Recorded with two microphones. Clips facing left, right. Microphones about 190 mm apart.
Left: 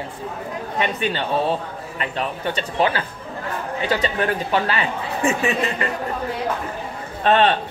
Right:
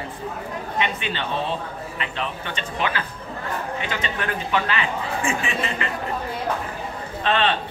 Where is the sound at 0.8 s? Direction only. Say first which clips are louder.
Left 5 dB; 40° left (ahead or behind).